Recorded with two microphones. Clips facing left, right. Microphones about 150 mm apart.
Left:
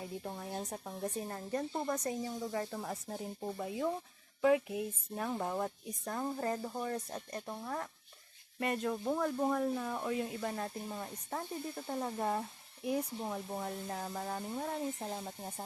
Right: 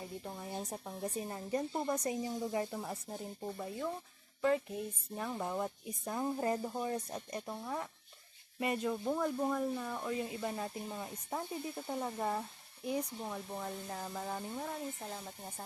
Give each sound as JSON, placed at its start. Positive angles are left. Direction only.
{"t": 0.3, "sound": "speech", "side_deg": 0}
{"t": 2.7, "sound": "speech", "side_deg": 0}
{"t": 15.0, "sound": "speech", "side_deg": 20}